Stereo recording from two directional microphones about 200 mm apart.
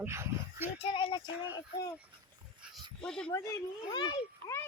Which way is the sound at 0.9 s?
25° left (ahead or behind).